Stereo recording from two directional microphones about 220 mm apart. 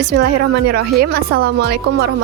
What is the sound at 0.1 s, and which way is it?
Speech, 50° right (ahead or behind).